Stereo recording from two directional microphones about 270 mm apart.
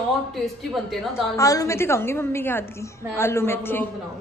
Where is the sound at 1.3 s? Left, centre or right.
Centre.